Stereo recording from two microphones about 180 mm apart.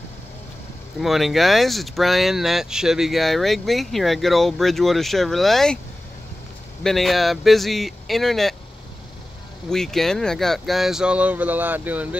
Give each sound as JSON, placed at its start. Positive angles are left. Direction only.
{"t": 0.9, "sound": "speech", "side_deg": 0}
{"t": 6.8, "sound": "speech", "side_deg": 0}
{"t": 9.7, "sound": "speech", "side_deg": 5}